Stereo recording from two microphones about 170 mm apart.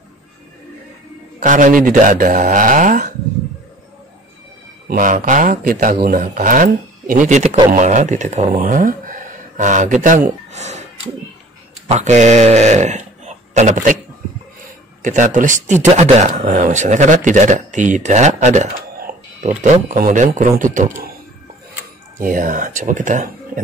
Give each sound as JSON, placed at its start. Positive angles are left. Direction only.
{"t": 1.4, "sound": "a man's voice", "side_deg": -50}
{"t": 4.8, "sound": "a man's voice", "side_deg": -55}
{"t": 8.5, "sound": "speech", "side_deg": -55}
{"t": 10.5, "sound": "a sound", "side_deg": -40}
{"t": 11.9, "sound": "speech", "side_deg": -45}
{"t": 15.0, "sound": "a man's voice", "side_deg": -50}
{"t": 18.9, "sound": "a sound", "side_deg": -60}
{"t": 19.6, "sound": "a man's voice", "side_deg": -50}
{"t": 22.2, "sound": "a man's voice", "side_deg": -50}